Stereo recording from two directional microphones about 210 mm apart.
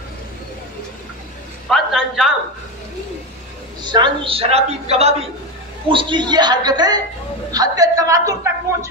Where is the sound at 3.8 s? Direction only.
20° right (ahead or behind).